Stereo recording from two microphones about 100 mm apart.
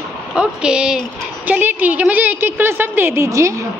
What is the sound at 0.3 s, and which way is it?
A woman's voice, 10° right (ahead or behind).